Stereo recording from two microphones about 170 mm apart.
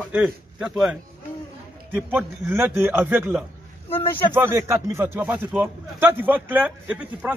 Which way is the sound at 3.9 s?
30° left (ahead or behind).